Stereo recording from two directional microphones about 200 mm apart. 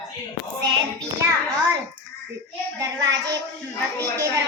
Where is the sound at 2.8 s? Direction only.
15° right (ahead or behind).